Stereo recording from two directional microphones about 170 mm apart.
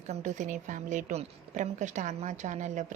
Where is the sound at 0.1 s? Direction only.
45° right (ahead or behind).